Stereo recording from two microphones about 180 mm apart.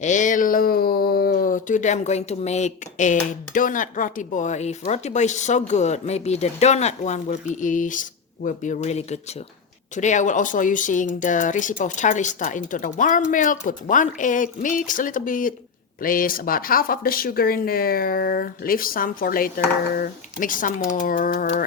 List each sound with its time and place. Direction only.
0.0 s speech: 45° left (ahead or behind)